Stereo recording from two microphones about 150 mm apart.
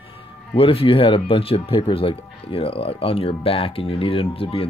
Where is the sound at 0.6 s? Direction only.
40° left (ahead or behind).